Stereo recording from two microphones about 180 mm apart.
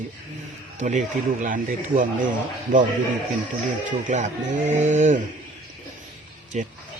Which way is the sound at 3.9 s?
45° right (ahead or behind).